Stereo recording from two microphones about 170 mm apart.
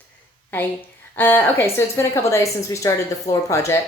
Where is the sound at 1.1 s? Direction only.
10° left (ahead or behind).